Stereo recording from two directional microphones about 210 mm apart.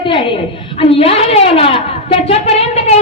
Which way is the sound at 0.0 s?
25° left (ahead or behind).